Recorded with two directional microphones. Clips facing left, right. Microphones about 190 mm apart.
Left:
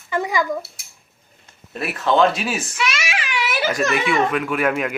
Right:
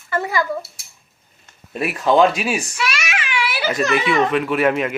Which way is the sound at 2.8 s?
25° left (ahead or behind).